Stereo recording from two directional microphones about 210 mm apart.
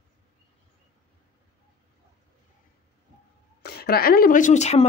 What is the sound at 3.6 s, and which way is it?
A woman's voice, 50° left (ahead or behind).